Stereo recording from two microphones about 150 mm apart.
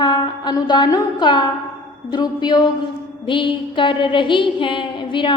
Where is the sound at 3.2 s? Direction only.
35° left (ahead or behind).